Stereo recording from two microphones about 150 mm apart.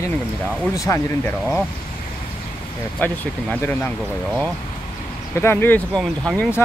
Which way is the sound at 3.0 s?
10° left (ahead or behind).